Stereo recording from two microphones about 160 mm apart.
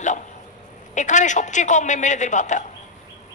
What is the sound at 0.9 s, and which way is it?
A man's voice, 50° left (ahead or behind).